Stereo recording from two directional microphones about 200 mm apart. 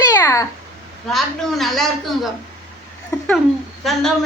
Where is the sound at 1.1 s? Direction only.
Centre (ahead or behind).